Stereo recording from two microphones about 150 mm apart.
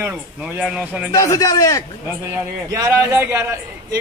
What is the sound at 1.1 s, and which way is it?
Speech, 20° left (ahead or behind).